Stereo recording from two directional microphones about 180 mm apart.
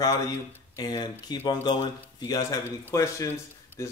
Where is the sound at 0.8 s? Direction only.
20° left (ahead or behind).